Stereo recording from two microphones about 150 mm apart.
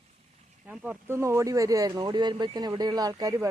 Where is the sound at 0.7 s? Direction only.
15° right (ahead or behind).